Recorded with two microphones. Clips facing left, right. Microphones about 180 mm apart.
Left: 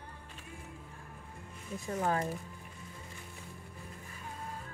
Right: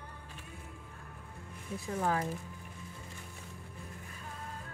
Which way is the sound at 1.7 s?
15° left (ahead or behind).